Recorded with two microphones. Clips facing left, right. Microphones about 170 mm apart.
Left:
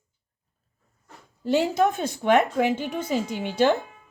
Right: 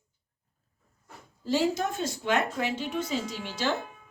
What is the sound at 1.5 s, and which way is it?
A woman's voice, 60° left (ahead or behind).